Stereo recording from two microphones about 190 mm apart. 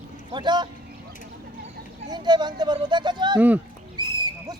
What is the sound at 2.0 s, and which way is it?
Speech, 20° right (ahead or behind).